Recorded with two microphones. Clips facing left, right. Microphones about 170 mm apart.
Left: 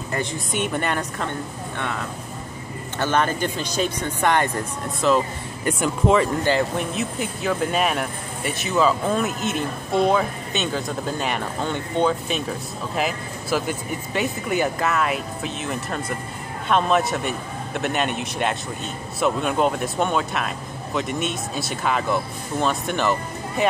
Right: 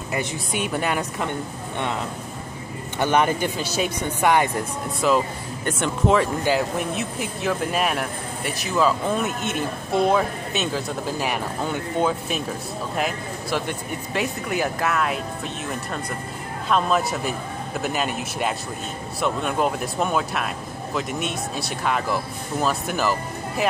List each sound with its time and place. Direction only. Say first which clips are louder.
0.1 s speech: even; 5° right (ahead or behind)
1.8 s speech: right 3 dB; 20° right (ahead or behind)
5.7 s speech: left 1 dB; 5° left (ahead or behind)